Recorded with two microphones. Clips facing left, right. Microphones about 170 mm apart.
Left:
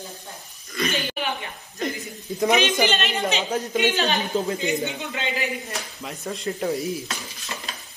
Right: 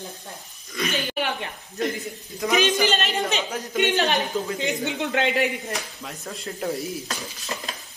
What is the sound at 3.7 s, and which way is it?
Speech, 60° right (ahead or behind).